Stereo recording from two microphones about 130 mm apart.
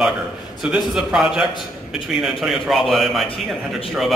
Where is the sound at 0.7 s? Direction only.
Centre (ahead or behind).